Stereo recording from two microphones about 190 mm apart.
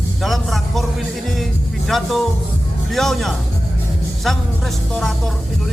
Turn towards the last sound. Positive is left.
turn(degrees=0)  # may be behind; listen again after turning